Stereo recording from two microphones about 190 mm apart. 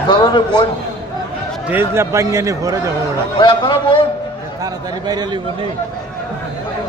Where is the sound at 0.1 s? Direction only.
25° left (ahead or behind).